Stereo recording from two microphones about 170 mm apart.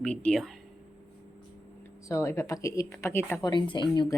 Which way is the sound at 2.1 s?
15° left (ahead or behind).